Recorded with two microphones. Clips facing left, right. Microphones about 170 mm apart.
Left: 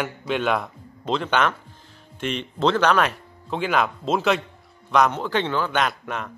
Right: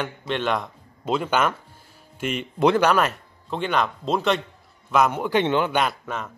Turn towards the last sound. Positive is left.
turn(degrees=0)  # may be behind; listen again after turning